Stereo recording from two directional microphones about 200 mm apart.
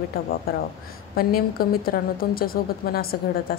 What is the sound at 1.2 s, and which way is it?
Speech, 50° left (ahead or behind).